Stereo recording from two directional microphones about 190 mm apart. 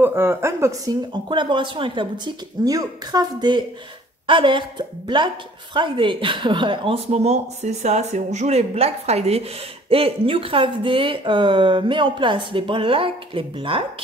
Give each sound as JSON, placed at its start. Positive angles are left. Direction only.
{"t": 0.0, "sound": "a woman's voice", "side_deg": -10}